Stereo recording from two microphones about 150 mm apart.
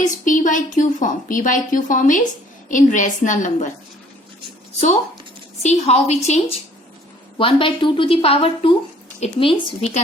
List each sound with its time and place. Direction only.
0.0 s a woman's voice: 55° left (ahead or behind)
5.6 s a woman's voice: 45° left (ahead or behind)
7.3 s a woman's voice: 35° left (ahead or behind)